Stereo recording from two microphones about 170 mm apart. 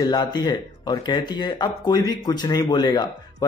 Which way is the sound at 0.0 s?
25° left (ahead or behind).